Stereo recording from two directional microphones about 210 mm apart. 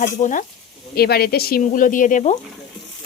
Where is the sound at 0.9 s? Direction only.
50° left (ahead or behind).